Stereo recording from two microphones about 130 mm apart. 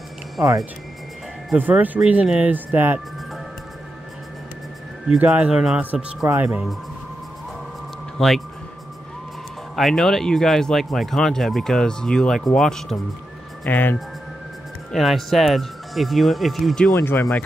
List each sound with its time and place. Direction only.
1.5 s speech: 10° right (ahead or behind)
5.0 s speech: 10° right (ahead or behind)
8.2 s speech: 5° left (ahead or behind)
9.8 s speech: centre (ahead or behind)
13.7 s speech: 15° left (ahead or behind)
14.9 s speech: centre (ahead or behind)
16.9 s speech: 20° left (ahead or behind)